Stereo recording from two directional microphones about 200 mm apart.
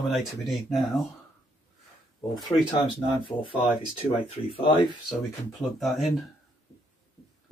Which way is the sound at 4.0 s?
30° left (ahead or behind).